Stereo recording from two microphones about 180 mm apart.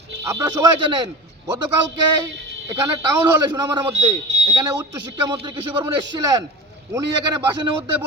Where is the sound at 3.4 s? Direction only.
25° right (ahead or behind).